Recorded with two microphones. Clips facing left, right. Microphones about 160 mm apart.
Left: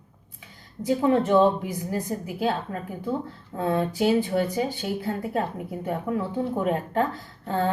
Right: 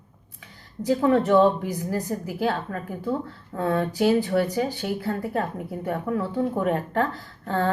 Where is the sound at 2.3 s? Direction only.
20° left (ahead or behind).